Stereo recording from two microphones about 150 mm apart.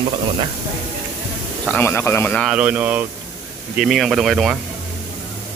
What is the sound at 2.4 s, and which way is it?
Speech, 5° right (ahead or behind).